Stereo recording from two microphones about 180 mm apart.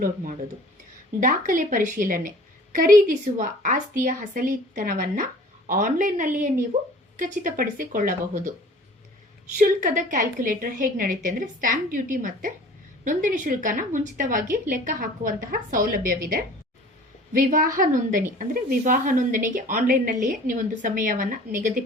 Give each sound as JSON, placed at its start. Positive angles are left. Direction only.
{"t": 1.2, "sound": "a woman's voice", "side_deg": -50}
{"t": 9.6, "sound": "a woman's voice", "side_deg": -50}